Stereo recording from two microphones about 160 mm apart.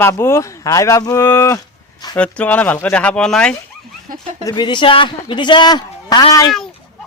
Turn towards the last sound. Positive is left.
turn(degrees=25)  # may be behind; listen again after turning